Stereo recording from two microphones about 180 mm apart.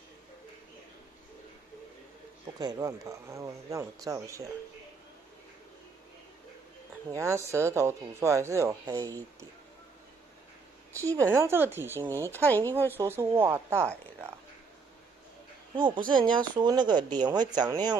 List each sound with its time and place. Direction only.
2.6 s speech: 20° right (ahead or behind)
7.2 s speech: 15° right (ahead or behind)
11.2 s speech: 15° right (ahead or behind)
12.4 s speech: 10° left (ahead or behind)
12.9 s speech: 15° right (ahead or behind)
15.7 s speech: 25° right (ahead or behind)